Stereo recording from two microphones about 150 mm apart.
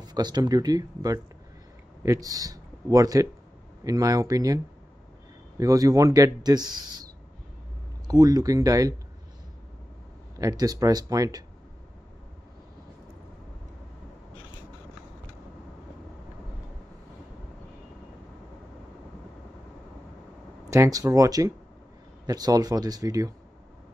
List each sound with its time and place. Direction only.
0.0 s speech: 25° right (ahead or behind)
5.6 s speech: 25° right (ahead or behind)
8.1 s speech: 25° right (ahead or behind)
10.4 s speech: 25° right (ahead or behind)
20.7 s speech: 20° right (ahead or behind)